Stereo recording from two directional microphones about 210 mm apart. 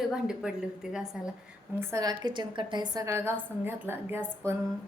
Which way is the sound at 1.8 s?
15° right (ahead or behind).